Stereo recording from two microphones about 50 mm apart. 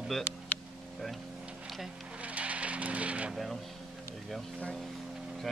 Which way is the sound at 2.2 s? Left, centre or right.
Right.